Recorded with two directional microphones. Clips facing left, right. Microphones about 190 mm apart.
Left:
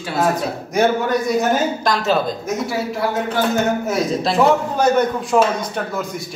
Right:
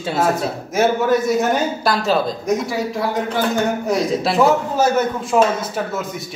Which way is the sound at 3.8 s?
Centre (ahead or behind).